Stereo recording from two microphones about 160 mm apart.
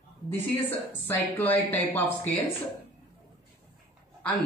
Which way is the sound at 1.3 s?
10° left (ahead or behind).